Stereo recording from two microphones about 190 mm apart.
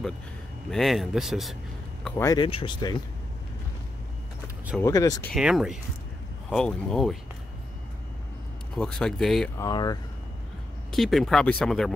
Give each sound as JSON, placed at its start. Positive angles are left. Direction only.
{"t": 0.7, "sound": "speech", "side_deg": 0}
{"t": 2.0, "sound": "speech", "side_deg": 15}
{"t": 4.8, "sound": "speech", "side_deg": 20}
{"t": 5.3, "sound": "speech", "side_deg": -5}
{"t": 8.7, "sound": "speech", "side_deg": 5}
{"t": 9.6, "sound": "speech", "side_deg": 20}
{"t": 10.9, "sound": "speech", "side_deg": 0}